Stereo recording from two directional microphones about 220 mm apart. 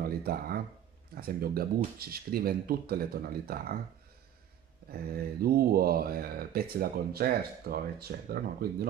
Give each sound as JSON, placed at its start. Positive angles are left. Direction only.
{"t": 0.0, "sound": "speech", "side_deg": -45}
{"t": 4.9, "sound": "speech", "side_deg": -45}